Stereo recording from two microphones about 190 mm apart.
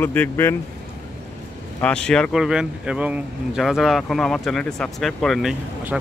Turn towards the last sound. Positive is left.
turn(degrees=0)  # may be behind; listen again after turning